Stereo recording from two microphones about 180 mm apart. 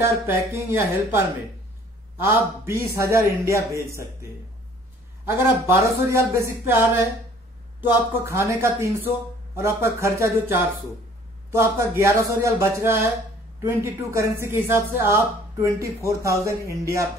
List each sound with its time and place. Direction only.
0.0 s speech: 15° right (ahead or behind)
5.7 s speech: 15° right (ahead or behind)